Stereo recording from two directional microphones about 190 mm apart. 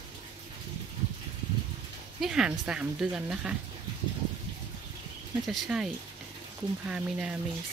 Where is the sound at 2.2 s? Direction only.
5° right (ahead or behind).